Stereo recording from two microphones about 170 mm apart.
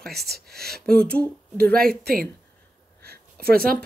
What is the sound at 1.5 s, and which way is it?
Speech, 60° right (ahead or behind).